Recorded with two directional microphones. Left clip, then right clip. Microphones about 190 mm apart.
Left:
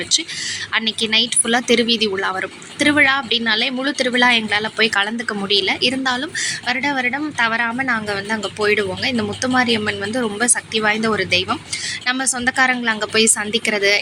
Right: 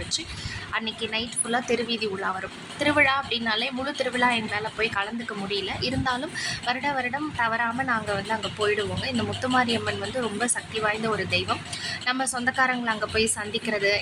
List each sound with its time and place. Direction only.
0.7 s speech: 15° left (ahead or behind)